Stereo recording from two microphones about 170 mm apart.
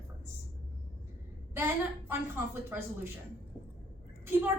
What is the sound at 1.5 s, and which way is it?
A woman's voice, 15° right (ahead or behind).